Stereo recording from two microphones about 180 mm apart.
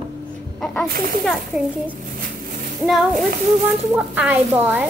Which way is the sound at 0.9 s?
50° right (ahead or behind).